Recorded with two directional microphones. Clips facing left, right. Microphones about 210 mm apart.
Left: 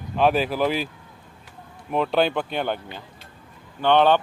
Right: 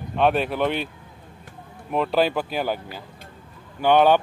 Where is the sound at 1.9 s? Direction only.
Centre (ahead or behind).